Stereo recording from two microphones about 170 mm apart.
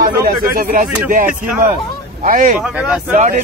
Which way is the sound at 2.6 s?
5° right (ahead or behind).